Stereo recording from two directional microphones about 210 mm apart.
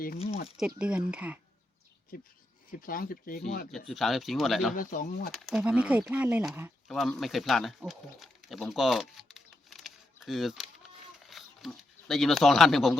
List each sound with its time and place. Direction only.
0.2 s speech: 30° left (ahead or behind)
0.5 s speech: 5° right (ahead or behind)
2.1 s speech: 45° left (ahead or behind)
3.7 s speech: centre (ahead or behind)
4.7 s speech: 40° left (ahead or behind)
5.3 s speech: centre (ahead or behind)